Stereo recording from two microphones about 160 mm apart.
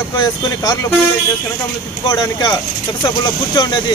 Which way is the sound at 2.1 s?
25° left (ahead or behind).